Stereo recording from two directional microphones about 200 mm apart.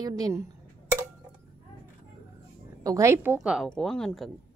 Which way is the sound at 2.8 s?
15° right (ahead or behind).